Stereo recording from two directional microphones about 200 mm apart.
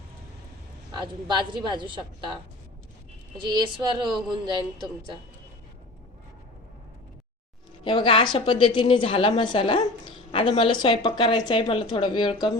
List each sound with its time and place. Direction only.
0.9 s a woman's voice: 20° right (ahead or behind)
7.9 s a woman's voice: 25° left (ahead or behind)